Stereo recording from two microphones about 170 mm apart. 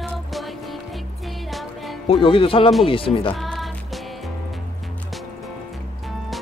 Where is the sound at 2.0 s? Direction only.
35° left (ahead or behind).